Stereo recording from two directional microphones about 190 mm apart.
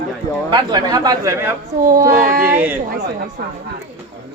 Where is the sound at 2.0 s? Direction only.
50° right (ahead or behind).